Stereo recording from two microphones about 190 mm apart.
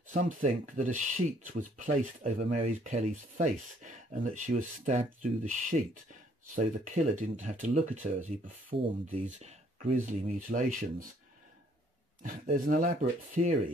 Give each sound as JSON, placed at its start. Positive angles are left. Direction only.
{"t": 0.1, "sound": "speech", "side_deg": -40}
{"t": 8.7, "sound": "speech", "side_deg": -30}
{"t": 12.2, "sound": "speech", "side_deg": -45}